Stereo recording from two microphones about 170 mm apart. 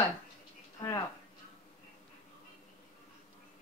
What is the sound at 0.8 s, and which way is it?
Speech, 20° left (ahead or behind).